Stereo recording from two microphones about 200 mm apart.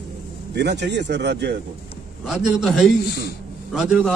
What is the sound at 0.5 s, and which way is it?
A man's voice, 55° right (ahead or behind).